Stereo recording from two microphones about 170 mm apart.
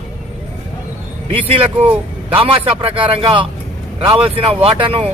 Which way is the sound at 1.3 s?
35° right (ahead or behind).